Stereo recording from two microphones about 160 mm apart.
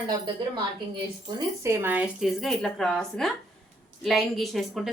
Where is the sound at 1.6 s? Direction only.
15° right (ahead or behind).